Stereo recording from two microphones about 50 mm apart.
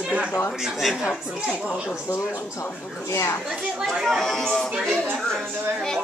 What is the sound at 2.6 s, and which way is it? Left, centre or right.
Speech, left.